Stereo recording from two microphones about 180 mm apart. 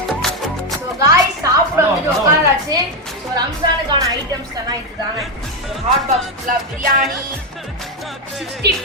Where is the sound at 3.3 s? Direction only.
25° right (ahead or behind).